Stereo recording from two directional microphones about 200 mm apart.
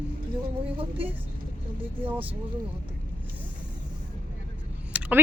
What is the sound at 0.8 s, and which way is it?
Speech, 25° right (ahead or behind).